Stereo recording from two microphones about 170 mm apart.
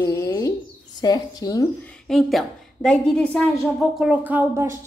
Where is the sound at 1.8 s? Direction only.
5° left (ahead or behind).